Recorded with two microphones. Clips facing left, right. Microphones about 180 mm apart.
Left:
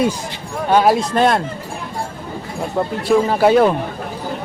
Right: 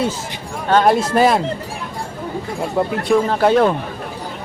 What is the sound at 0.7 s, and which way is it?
Speech, 10° left (ahead or behind).